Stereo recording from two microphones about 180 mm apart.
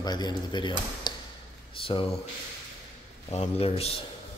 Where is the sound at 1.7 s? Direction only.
30° left (ahead or behind).